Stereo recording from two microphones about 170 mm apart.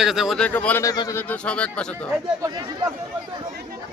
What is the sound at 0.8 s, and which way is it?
Speech, 20° left (ahead or behind).